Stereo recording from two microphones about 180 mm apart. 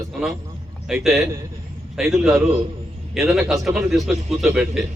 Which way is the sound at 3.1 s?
Centre (ahead or behind).